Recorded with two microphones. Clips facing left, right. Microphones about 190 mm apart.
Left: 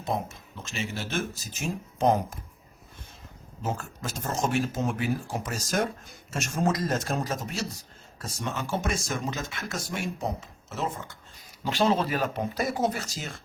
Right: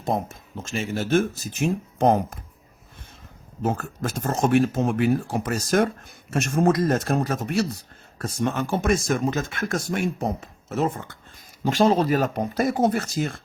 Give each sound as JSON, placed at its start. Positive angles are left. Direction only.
{"t": 0.0, "sound": "speech", "side_deg": -45}
{"t": 3.6, "sound": "a man's voice", "side_deg": -55}
{"t": 11.6, "sound": "speech", "side_deg": -45}